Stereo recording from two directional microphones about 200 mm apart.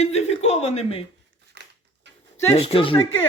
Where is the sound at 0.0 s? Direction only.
35° left (ahead or behind).